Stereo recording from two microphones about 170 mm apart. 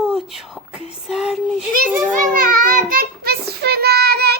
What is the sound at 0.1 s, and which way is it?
Whispering, 5° right (ahead or behind).